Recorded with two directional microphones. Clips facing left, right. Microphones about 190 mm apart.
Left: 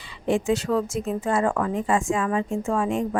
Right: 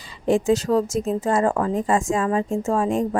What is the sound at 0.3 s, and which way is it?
A woman's voice, 40° right (ahead or behind).